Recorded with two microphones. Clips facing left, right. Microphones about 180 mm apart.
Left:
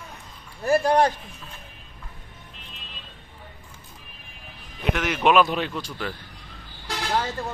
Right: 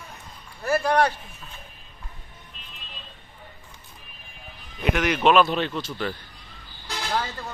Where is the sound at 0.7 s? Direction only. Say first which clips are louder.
Left 2 dB; 15° left (ahead or behind).